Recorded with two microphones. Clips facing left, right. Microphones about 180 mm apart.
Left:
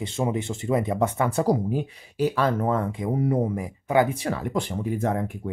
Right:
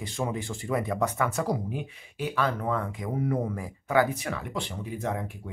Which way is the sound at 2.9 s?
30° left (ahead or behind).